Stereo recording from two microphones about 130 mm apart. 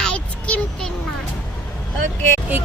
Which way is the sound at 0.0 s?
10° left (ahead or behind).